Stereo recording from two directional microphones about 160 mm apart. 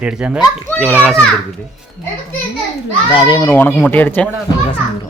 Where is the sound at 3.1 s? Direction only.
30° left (ahead or behind).